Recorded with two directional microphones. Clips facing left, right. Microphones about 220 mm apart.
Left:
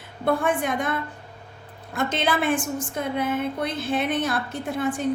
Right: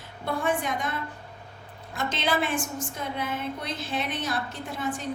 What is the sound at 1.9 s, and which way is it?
A woman's voice, 55° left (ahead or behind).